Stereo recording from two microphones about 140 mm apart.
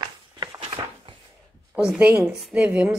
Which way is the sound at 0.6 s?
40° right (ahead or behind).